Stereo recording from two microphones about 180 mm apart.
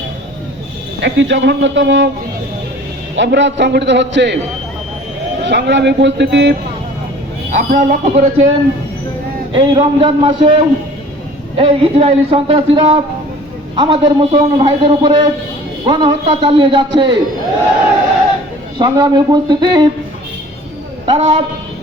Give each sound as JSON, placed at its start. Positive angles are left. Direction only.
{"t": 1.0, "sound": "a man's voice", "side_deg": -85}
{"t": 3.2, "sound": "a man's voice", "side_deg": -80}
{"t": 5.4, "sound": "a man's voice", "side_deg": -75}
{"t": 7.5, "sound": "a man's voice", "side_deg": -45}
{"t": 18.8, "sound": "a man's voice", "side_deg": -25}
{"t": 21.1, "sound": "a man's voice", "side_deg": -30}